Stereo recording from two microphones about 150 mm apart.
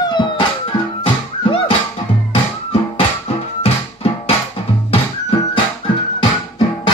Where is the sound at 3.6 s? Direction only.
40° left (ahead or behind).